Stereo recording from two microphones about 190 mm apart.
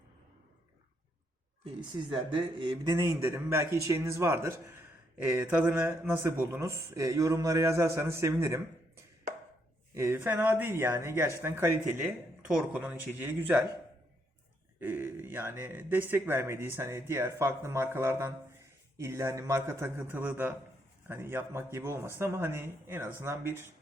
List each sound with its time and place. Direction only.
1.6 s speech: 25° right (ahead or behind)
9.9 s speech: 15° right (ahead or behind)
14.8 s speech: 10° right (ahead or behind)